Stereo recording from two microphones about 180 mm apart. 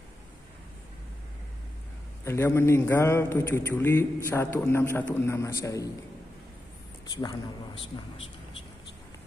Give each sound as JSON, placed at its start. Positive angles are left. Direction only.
{"t": 2.2, "sound": "a man's voice", "side_deg": 15}
{"t": 7.1, "sound": "speech", "side_deg": 20}